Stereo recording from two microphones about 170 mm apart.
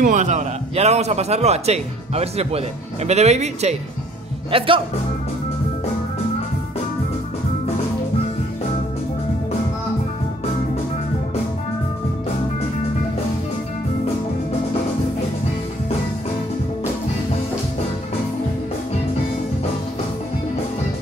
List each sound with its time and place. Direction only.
0.0 s a man's voice: 45° right (ahead or behind)